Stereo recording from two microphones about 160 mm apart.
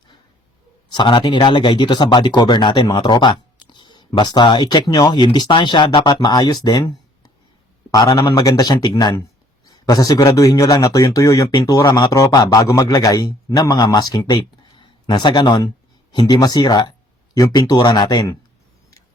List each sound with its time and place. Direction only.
0.9 s speech: 30° left (ahead or behind)